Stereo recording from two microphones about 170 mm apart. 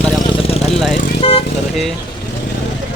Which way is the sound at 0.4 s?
35° left (ahead or behind).